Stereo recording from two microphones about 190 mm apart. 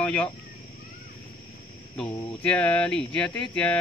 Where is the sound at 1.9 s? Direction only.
5° left (ahead or behind).